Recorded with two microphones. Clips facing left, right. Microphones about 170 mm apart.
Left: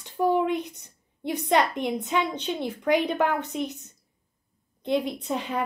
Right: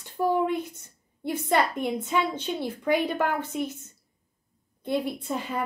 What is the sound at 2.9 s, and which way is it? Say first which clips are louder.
Speech: left 2 dB; 15° left (ahead or behind).